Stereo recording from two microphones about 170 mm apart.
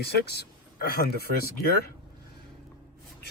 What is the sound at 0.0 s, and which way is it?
Speech, 70° left (ahead or behind).